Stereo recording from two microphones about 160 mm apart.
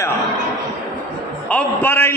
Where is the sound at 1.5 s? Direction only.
10° left (ahead or behind).